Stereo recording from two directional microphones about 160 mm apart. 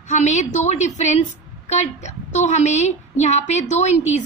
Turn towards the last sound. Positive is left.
turn(degrees=45)  # may be behind; listen again after turning